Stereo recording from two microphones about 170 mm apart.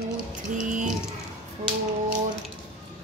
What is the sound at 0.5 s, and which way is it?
Speech, 45° right (ahead or behind).